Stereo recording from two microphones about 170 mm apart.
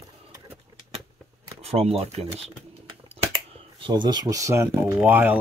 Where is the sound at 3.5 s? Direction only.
30° right (ahead or behind); by 5.4 s 10° right (ahead or behind).